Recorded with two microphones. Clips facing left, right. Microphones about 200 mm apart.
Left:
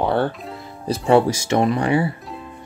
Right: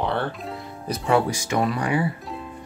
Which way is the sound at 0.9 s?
30° left (ahead or behind).